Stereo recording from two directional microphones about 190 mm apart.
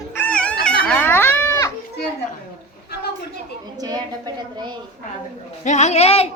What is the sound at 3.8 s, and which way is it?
A woman's voice, 20° right (ahead or behind).